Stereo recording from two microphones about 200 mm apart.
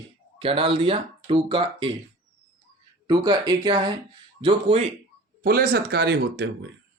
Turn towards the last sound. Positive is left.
turn(degrees=-55)  # may be behind; listen again after turning